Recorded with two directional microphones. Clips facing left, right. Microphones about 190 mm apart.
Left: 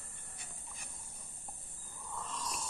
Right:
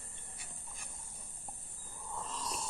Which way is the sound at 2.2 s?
35° right (ahead or behind).